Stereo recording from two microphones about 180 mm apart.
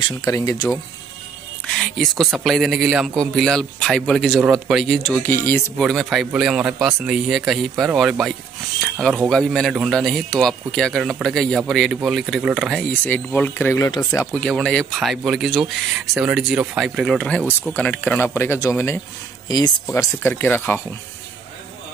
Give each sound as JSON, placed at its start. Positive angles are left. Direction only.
{"t": 0.2, "sound": "speech", "side_deg": 20}
{"t": 1.8, "sound": "a man's voice", "side_deg": 5}
{"t": 5.8, "sound": "a man's voice", "side_deg": 0}
{"t": 13.0, "sound": "a man's voice", "side_deg": 10}